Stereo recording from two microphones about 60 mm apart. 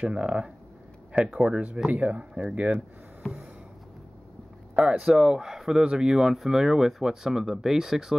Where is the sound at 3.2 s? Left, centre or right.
Centre.